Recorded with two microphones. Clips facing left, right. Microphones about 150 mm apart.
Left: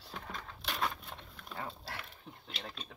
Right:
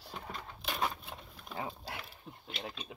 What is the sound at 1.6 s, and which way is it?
Dog, 15° right (ahead or behind).